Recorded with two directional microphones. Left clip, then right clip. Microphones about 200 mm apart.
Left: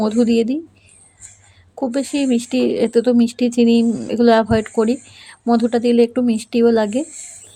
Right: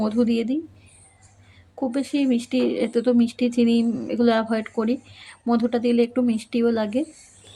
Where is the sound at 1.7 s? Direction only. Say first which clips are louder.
Left 4 dB; 20° left (ahead or behind).